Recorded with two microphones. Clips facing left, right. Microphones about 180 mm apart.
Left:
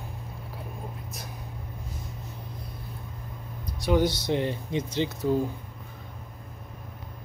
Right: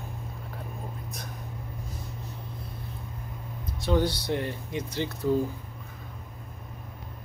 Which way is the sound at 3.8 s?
15° left (ahead or behind).